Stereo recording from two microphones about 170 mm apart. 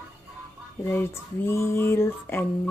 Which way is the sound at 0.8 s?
15° left (ahead or behind).